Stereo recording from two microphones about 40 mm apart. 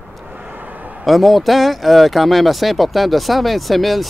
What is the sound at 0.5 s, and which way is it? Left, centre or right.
Vehicle, right.